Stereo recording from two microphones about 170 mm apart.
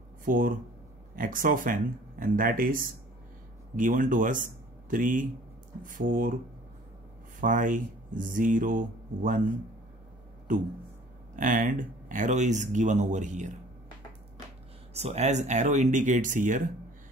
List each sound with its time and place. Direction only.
0.2 s speech: 55° right (ahead or behind)
7.3 s speech: 50° right (ahead or behind)
10.5 s speech: 50° right (ahead or behind)
15.0 s speech: 40° right (ahead or behind)